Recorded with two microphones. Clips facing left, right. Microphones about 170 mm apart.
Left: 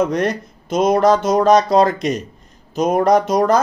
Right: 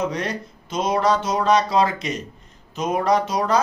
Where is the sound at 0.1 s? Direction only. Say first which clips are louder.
Left 8 dB; 50° left (ahead or behind).